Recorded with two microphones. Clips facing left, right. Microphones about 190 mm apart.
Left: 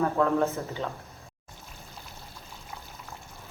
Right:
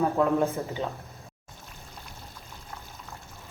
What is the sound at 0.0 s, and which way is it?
Speech, 15° right (ahead or behind).